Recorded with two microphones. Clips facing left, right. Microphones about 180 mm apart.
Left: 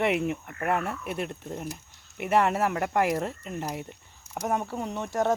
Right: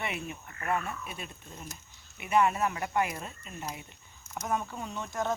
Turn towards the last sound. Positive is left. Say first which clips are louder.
# left 6 dB
turn(degrees=65)  # may be behind; listen again after turning